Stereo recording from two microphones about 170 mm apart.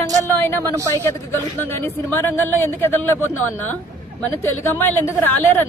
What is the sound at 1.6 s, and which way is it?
Speech, 10° left (ahead or behind).